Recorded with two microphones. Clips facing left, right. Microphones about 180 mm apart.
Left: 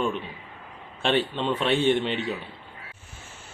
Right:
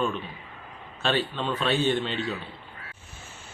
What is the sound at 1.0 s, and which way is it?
A man's voice, 25° left (ahead or behind).